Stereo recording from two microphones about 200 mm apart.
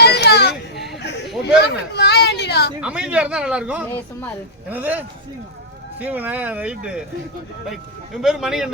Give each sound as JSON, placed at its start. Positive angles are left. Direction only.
{"t": 0.0, "sound": "a sound", "side_deg": 55}
{"t": 1.5, "sound": "speech", "side_deg": 55}
{"t": 2.8, "sound": "a man's voice", "side_deg": -5}